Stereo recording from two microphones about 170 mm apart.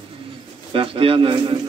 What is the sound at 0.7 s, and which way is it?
Speech, 30° right (ahead or behind).